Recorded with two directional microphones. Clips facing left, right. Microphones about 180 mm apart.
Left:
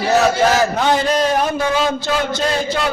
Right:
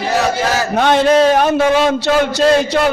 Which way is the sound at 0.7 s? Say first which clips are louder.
Right 5 dB; 70° right (ahead or behind).